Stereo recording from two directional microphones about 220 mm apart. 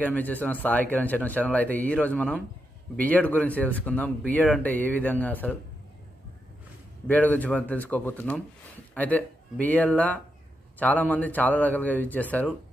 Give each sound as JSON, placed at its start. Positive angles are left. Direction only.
{"t": 0.0, "sound": "speech", "side_deg": 5}
{"t": 7.1, "sound": "speech", "side_deg": 5}